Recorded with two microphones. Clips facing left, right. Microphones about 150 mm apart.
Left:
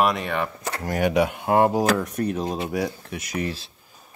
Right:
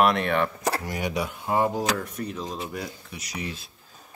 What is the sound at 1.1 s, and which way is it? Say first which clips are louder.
Speech: left 6 dB; 70° left (ahead or behind).